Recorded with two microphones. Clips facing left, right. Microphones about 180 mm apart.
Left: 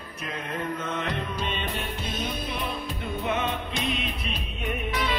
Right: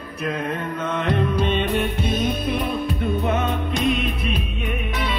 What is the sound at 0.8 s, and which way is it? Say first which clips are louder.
Music: right 8 dB; 55° right (ahead or behind).